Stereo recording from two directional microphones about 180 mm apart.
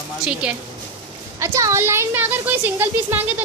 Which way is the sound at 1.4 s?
15° right (ahead or behind).